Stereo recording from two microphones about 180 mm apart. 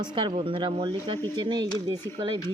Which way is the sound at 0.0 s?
25° right (ahead or behind).